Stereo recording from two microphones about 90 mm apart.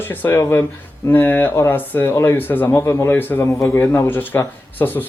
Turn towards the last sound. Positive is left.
turn(degrees=20)  # may be behind; listen again after turning